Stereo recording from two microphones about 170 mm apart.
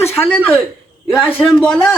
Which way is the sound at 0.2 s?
10° left (ahead or behind).